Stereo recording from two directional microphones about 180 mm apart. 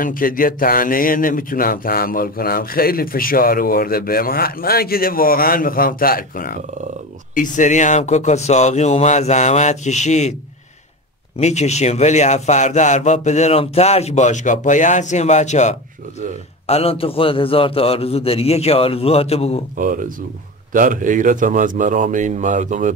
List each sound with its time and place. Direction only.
0.0 s a man's voice: 50° left (ahead or behind)
11.3 s a man's voice: 40° left (ahead or behind)
19.8 s a man's voice: 45° right (ahead or behind)